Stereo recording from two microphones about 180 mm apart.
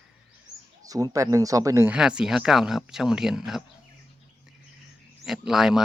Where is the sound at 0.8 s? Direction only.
20° right (ahead or behind).